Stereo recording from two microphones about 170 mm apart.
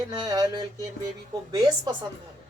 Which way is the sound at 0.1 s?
20° right (ahead or behind).